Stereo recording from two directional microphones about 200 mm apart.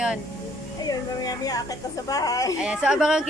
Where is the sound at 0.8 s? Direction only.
20° left (ahead or behind).